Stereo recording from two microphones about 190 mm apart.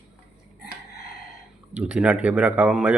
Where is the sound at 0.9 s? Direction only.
55° left (ahead or behind).